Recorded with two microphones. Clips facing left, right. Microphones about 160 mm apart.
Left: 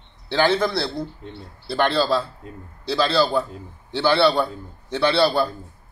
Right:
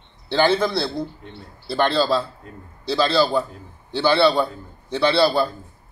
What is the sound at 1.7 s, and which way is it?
A man's voice, 5° left (ahead or behind).